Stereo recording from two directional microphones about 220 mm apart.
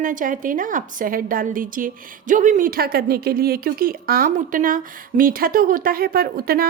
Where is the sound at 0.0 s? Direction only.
35° right (ahead or behind).